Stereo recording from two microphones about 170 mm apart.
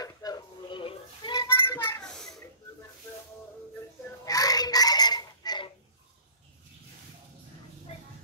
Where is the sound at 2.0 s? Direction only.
5° left (ahead or behind).